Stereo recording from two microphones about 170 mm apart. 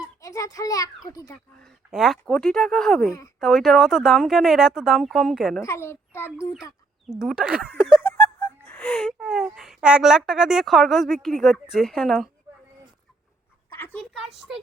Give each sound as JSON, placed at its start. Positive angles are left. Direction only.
{"t": 0.2, "sound": "a sound", "side_deg": 20}
{"t": 1.1, "sound": "speech", "side_deg": 20}
{"t": 1.6, "sound": "speech", "side_deg": 0}
{"t": 5.6, "sound": "a child's voice", "side_deg": 15}
{"t": 6.6, "sound": "a sound", "side_deg": 20}
{"t": 7.2, "sound": "speech", "side_deg": 0}
{"t": 8.0, "sound": "speech", "side_deg": 10}
{"t": 13.7, "sound": "a sound", "side_deg": 15}
{"t": 14.0, "sound": "speech", "side_deg": 0}